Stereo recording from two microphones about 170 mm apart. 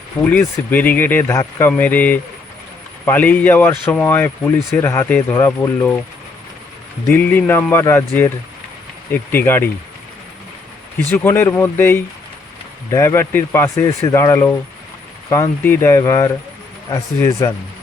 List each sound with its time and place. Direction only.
0.2 s speech: 10° left (ahead or behind)
7.1 s speech: 10° left (ahead or behind)
11.1 s speech: 15° left (ahead or behind)